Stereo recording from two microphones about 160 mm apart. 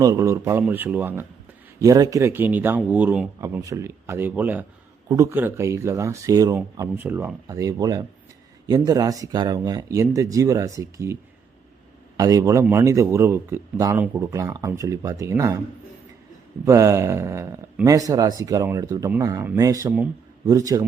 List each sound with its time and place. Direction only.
0.0 s speech: 20° right (ahead or behind)
16.6 s speech: 20° right (ahead or behind)